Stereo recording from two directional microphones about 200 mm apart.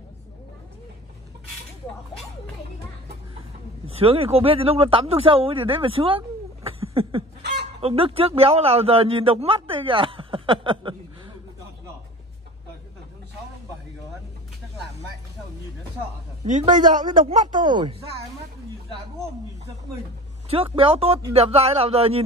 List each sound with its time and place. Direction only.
3.8 s speech: 30° right (ahead or behind)
6.8 s a sound: 30° right (ahead or behind)
7.8 s a man's voice: 30° right (ahead or behind)
16.4 s a man's voice: 40° right (ahead or behind)
17.6 s speech: 20° right (ahead or behind)
20.4 s speech: 30° right (ahead or behind)